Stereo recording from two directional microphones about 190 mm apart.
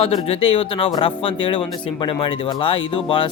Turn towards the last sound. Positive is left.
turn(degrees=25)  # may be behind; listen again after turning